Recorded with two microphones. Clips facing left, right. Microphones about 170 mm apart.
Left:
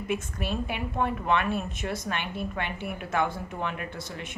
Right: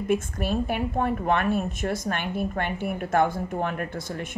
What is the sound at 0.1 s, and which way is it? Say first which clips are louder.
A woman's voice: right 6 dB; 45° right (ahead or behind).